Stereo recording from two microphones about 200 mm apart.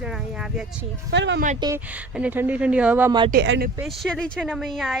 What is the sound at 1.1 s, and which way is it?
Speech, 65° right (ahead or behind).